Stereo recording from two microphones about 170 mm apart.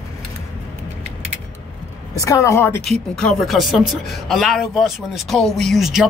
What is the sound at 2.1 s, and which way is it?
Speech, 20° left (ahead or behind).